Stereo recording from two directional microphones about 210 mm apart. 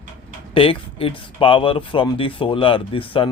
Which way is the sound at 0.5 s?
25° left (ahead or behind).